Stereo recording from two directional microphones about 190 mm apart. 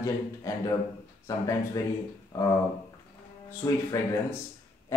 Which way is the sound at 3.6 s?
15° left (ahead or behind).